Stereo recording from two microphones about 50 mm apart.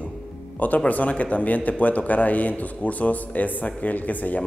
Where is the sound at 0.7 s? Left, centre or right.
Left.